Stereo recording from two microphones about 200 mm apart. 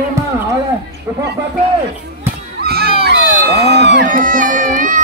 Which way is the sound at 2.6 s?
50° right (ahead or behind).